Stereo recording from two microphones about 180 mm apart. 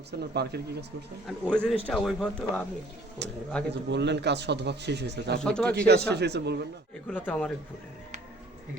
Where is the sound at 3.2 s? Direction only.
70° right (ahead or behind).